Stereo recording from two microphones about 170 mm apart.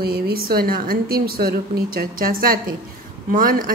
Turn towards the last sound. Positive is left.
turn(degrees=-55)  # may be behind; listen again after turning